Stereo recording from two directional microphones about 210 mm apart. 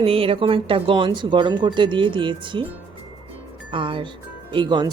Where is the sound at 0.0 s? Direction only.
25° right (ahead or behind).